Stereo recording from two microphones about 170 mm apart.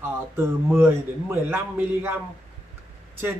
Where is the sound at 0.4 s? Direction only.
15° right (ahead or behind).